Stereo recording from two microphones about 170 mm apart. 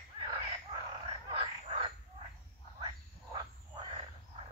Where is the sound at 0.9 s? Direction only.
35° right (ahead or behind).